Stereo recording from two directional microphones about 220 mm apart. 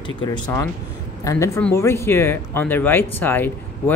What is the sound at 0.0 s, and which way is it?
Speech, 20° left (ahead or behind).